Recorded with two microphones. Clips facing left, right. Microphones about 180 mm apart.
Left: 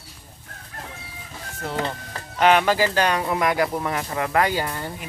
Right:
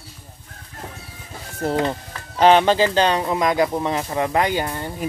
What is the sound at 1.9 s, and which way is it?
Speech, 30° right (ahead or behind).